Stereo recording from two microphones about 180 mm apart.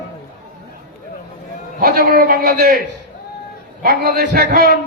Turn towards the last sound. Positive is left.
turn(degrees=-60)  # may be behind; listen again after turning